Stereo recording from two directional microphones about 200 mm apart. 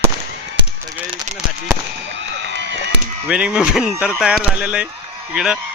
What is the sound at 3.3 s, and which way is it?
Speech, 5° right (ahead or behind).